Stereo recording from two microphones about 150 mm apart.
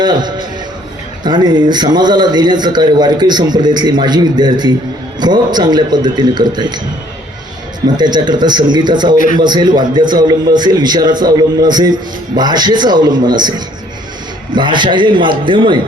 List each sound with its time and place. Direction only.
0.0 s a man's voice: 30° right (ahead or behind)
7.9 s a man's voice: 30° right (ahead or behind)
14.5 s a man's voice: 30° right (ahead or behind)